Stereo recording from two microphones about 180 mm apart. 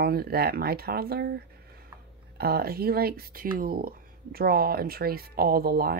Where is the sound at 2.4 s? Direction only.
55° right (ahead or behind).